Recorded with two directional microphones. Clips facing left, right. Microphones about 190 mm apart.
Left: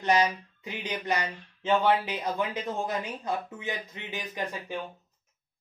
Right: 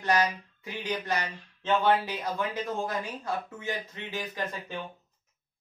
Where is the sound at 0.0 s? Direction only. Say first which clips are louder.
Left 2 dB; 20° left (ahead or behind).